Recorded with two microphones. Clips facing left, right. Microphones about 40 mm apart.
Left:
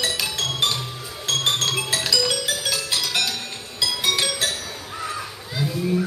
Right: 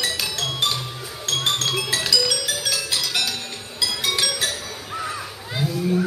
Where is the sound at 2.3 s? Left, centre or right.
Left.